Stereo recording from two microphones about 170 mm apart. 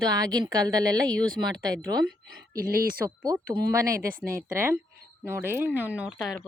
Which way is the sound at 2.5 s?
60° right (ahead or behind).